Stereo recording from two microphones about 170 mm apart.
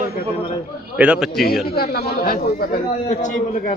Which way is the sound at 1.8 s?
60° left (ahead or behind).